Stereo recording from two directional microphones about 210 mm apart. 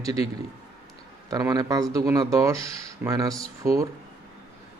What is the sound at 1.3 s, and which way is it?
Speech, 15° right (ahead or behind).